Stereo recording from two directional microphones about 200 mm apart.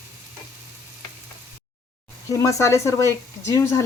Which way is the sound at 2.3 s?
15° left (ahead or behind).